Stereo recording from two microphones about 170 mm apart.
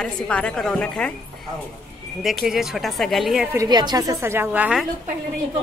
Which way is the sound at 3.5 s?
20° right (ahead or behind).